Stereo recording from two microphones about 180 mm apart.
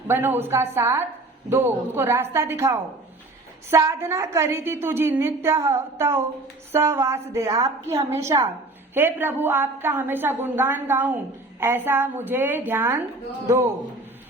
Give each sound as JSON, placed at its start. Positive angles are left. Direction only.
{"t": 0.1, "sound": "a woman's voice", "side_deg": -10}